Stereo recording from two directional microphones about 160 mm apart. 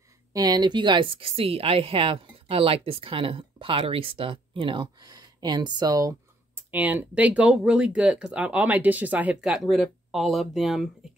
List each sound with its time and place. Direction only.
0.3 s a woman's voice: 25° right (ahead or behind); by 10.9 s centre (ahead or behind)